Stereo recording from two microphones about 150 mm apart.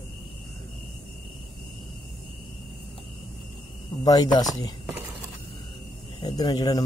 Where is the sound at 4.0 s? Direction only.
25° left (ahead or behind).